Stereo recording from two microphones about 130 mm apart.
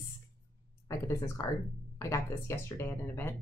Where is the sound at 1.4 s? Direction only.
25° left (ahead or behind).